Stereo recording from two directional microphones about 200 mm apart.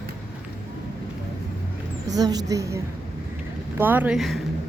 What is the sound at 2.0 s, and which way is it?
A woman's voice, 20° right (ahead or behind).